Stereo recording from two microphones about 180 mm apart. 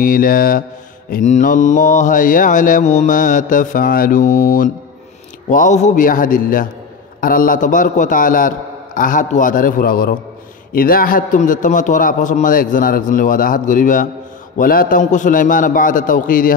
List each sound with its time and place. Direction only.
0.0 s mantra: 50° left (ahead or behind)
1.1 s mantra: 45° left (ahead or behind)